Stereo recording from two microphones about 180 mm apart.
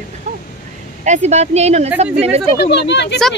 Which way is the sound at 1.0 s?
40° right (ahead or behind).